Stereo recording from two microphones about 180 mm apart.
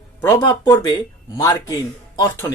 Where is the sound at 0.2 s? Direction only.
15° left (ahead or behind).